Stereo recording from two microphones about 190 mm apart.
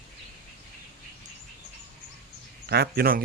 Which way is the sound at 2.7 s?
55° right (ahead or behind).